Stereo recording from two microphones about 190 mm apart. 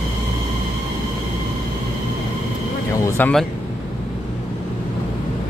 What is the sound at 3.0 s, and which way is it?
Speech, 10° left (ahead or behind).